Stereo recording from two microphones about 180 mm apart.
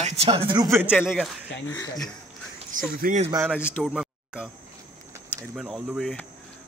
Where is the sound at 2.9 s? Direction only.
50° right (ahead or behind).